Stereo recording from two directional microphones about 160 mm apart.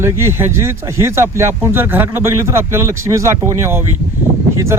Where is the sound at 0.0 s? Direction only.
15° right (ahead or behind).